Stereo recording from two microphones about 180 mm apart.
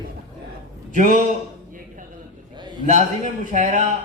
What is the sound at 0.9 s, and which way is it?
Speech, 45° right (ahead or behind).